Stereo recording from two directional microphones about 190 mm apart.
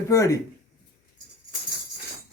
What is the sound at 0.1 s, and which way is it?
Speech, 15° left (ahead or behind).